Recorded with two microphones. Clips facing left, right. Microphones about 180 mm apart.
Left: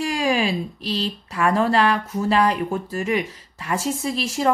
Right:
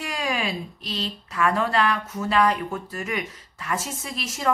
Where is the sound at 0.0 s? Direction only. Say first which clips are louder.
Left 6 dB; 30° left (ahead or behind).